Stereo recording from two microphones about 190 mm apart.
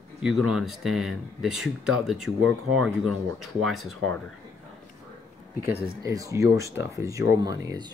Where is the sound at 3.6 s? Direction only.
Centre (ahead or behind).